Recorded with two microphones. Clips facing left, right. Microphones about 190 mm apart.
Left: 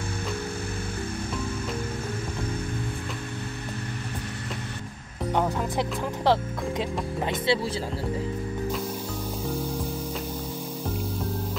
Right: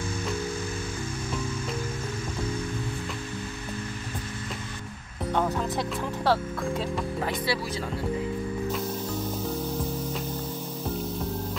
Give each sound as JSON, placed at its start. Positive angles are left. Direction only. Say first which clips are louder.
{"t": 5.3, "sound": "speech", "louder": "left 1 dB", "side_deg": 15}